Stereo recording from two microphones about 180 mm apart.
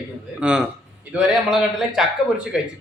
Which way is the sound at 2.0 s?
5° right (ahead or behind).